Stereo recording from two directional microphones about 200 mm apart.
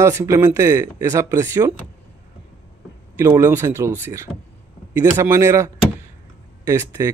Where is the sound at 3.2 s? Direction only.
15° right (ahead or behind).